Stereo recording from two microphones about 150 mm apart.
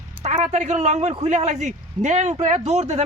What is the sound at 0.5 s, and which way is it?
Speech, 50° right (ahead or behind).